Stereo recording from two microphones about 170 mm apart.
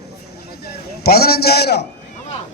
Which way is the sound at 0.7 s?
65° left (ahead or behind).